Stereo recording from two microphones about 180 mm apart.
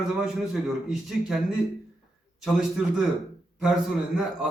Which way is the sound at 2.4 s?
Centre (ahead or behind).